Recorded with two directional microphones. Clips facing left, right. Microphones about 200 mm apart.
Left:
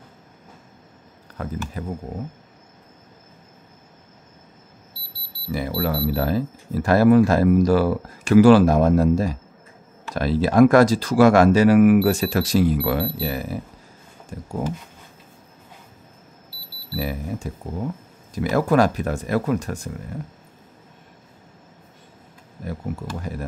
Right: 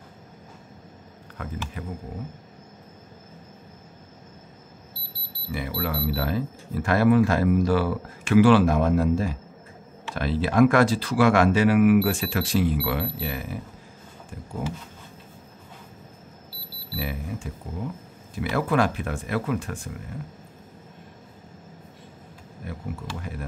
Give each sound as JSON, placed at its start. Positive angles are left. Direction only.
{"t": 1.4, "sound": "speech", "side_deg": 35}
{"t": 5.5, "sound": "speech", "side_deg": 40}
{"t": 17.0, "sound": "speech", "side_deg": 40}